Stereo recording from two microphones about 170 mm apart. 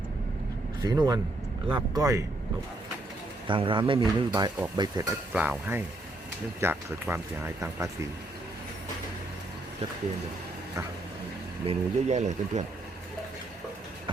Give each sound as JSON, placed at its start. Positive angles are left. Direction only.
{"t": 0.8, "sound": "speech", "side_deg": -20}
{"t": 3.4, "sound": "speech", "side_deg": -30}
{"t": 5.3, "sound": "speech", "side_deg": -10}
{"t": 11.6, "sound": "speech", "side_deg": -40}